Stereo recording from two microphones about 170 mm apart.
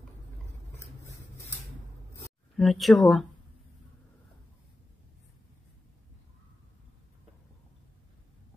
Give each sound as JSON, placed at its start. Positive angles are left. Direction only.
{"t": 0.7, "sound": "vehicle", "side_deg": 15}
{"t": 2.5, "sound": "speech", "side_deg": 0}